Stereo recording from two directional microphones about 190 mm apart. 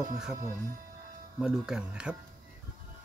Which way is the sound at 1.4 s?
5° right (ahead or behind).